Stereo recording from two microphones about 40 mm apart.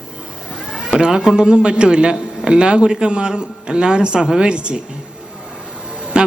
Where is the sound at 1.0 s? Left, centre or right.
Centre.